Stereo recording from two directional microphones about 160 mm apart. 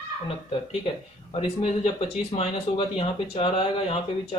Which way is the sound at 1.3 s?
40° left (ahead or behind).